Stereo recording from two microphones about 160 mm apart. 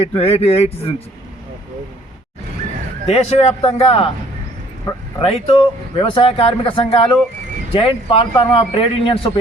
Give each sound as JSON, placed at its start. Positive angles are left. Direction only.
{"t": 0.2, "sound": "a man's voice", "side_deg": 40}
{"t": 3.1, "sound": "a man's voice", "side_deg": 40}
{"t": 5.2, "sound": "a man's voice", "side_deg": 40}